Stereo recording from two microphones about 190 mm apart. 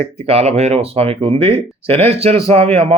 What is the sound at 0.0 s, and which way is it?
Speech, 30° right (ahead or behind).